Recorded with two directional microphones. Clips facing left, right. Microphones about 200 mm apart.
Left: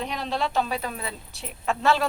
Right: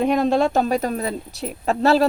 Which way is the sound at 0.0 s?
50° right (ahead or behind).